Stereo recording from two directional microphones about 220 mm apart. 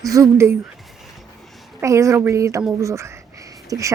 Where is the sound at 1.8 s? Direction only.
15° right (ahead or behind).